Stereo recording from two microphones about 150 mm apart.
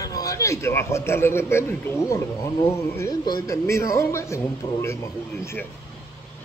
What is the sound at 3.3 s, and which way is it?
Speech, 20° left (ahead or behind).